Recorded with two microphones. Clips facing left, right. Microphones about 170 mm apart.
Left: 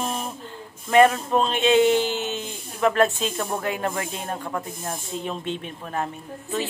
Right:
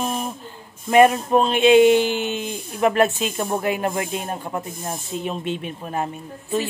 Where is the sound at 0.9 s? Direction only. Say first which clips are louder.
Right 2 dB; 15° right (ahead or behind).